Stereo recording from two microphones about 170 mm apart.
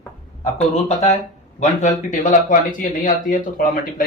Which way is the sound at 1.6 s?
45° left (ahead or behind).